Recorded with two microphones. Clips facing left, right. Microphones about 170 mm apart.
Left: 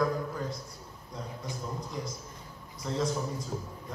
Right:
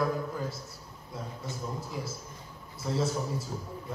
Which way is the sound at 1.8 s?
5° right (ahead or behind).